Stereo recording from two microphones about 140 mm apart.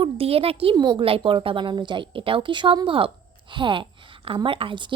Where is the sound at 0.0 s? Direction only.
45° right (ahead or behind).